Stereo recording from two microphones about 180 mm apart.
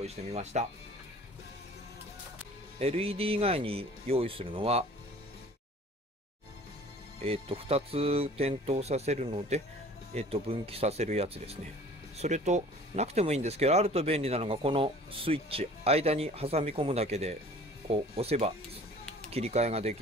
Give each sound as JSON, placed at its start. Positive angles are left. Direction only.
{"t": 0.0, "sound": "speech", "side_deg": -35}
{"t": 2.8, "sound": "speech", "side_deg": -35}
{"t": 7.2, "sound": "speech", "side_deg": -30}